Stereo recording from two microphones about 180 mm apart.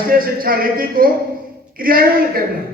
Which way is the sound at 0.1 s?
55° right (ahead or behind).